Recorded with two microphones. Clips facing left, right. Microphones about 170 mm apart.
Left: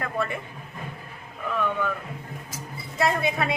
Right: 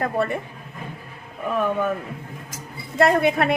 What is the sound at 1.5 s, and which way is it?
Speech, 45° right (ahead or behind).